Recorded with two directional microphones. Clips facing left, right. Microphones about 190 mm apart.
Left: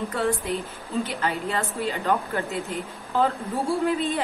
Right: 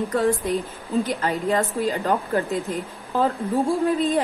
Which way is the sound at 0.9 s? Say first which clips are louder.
Right 4 dB; 35° right (ahead or behind).